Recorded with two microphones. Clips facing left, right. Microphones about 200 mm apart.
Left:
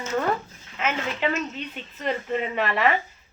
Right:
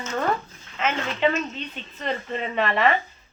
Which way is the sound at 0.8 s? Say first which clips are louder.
Right 3 dB; 10° left (ahead or behind).